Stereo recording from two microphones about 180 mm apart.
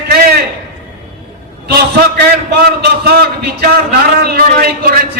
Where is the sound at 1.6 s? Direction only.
60° right (ahead or behind).